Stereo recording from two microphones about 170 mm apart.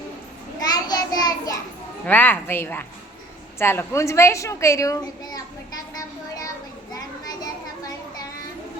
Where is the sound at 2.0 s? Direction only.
10° left (ahead or behind).